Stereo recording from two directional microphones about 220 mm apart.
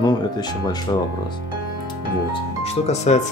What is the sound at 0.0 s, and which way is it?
Speech, 20° left (ahead or behind).